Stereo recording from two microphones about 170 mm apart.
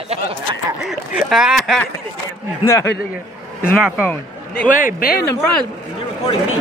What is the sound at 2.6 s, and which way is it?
Speech, 15° left (ahead or behind).